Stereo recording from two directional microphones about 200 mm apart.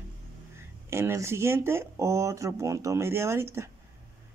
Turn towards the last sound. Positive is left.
turn(degrees=-15)  # may be behind; listen again after turning